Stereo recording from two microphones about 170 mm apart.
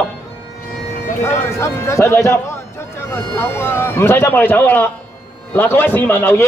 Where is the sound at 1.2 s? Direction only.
15° left (ahead or behind).